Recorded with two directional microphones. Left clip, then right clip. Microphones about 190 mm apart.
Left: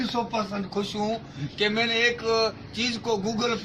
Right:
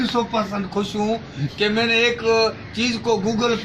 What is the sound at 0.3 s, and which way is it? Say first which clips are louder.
A man's voice: right 6 dB; 5° left (ahead or behind).